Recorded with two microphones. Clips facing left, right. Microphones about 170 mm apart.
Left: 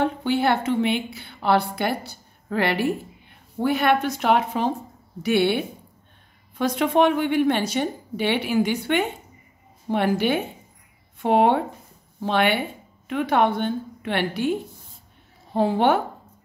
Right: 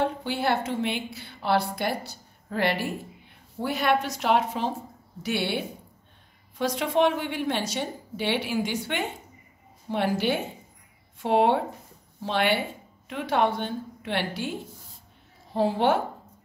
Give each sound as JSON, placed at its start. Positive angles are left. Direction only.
{"t": 0.0, "sound": "a woman's voice", "side_deg": 60}